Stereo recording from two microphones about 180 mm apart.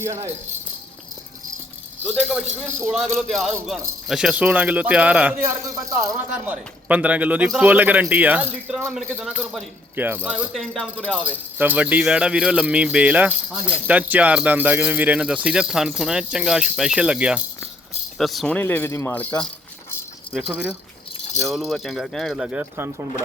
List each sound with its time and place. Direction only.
0.0 s speech: 15° right (ahead or behind)
2.6 s speech: centre (ahead or behind)
5.6 s speech: 20° right (ahead or behind); by 11.2 s 5° left (ahead or behind)
11.2 s speech: 10° right (ahead or behind); by 19.3 s 10° left (ahead or behind)
20.3 s speech: 5° right (ahead or behind)